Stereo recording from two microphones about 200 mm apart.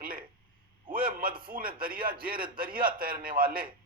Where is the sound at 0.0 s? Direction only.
45° right (ahead or behind).